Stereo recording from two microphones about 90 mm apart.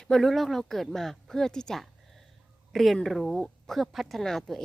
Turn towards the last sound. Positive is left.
turn(degrees=5)  # may be behind; listen again after turning